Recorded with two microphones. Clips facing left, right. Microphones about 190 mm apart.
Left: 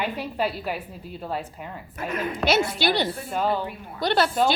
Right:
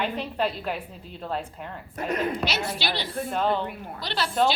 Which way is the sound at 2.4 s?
50° left (ahead or behind).